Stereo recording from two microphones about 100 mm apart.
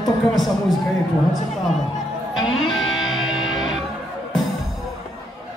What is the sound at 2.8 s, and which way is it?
Music, centre (ahead or behind).